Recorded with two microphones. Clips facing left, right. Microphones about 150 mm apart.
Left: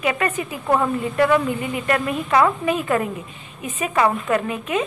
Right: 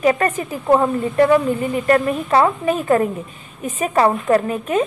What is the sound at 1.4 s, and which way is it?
A woman's voice, 40° right (ahead or behind).